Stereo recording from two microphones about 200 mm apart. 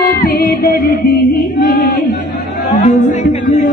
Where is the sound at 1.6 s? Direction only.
45° left (ahead or behind).